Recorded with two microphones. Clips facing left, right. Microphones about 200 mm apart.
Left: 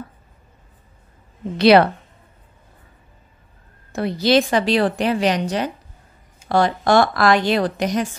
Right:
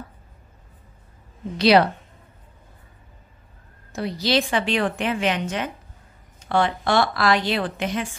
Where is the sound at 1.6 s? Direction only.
60° left (ahead or behind).